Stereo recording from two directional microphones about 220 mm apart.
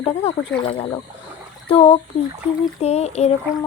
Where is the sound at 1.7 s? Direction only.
25° left (ahead or behind).